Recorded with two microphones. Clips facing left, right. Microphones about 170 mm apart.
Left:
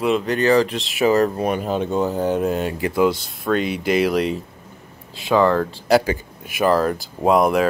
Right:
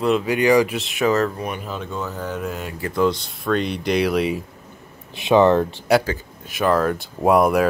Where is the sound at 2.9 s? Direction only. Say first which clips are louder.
Even; 5° left (ahead or behind).